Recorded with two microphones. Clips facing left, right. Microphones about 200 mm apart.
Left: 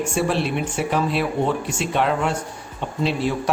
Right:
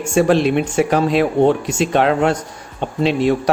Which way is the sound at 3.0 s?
90° right.